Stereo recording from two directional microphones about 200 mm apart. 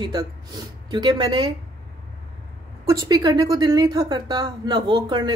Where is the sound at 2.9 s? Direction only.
20° right (ahead or behind).